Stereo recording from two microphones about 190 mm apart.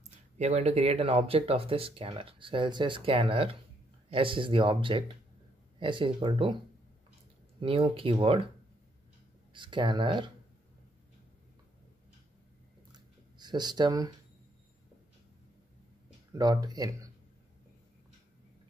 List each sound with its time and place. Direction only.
0.4 s speech: 35° right (ahead or behind)
7.6 s speech: 30° right (ahead or behind)
9.5 s speech: 25° right (ahead or behind)
12.9 s a sound: 20° right (ahead or behind)
16.3 s speech: 20° right (ahead or behind)